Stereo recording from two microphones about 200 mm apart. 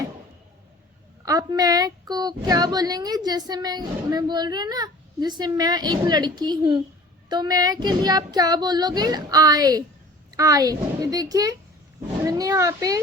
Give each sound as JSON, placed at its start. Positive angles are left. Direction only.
{"t": 1.2, "sound": "a woman's voice", "side_deg": -15}